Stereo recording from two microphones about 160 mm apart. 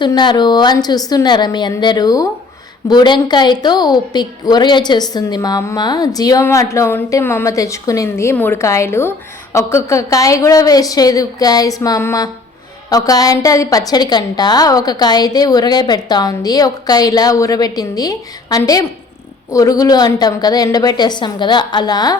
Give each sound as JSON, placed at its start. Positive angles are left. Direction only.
{"t": 0.0, "sound": "a woman's voice", "side_deg": 30}